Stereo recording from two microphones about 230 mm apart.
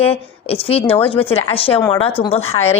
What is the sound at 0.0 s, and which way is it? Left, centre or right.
A woman's voice, left.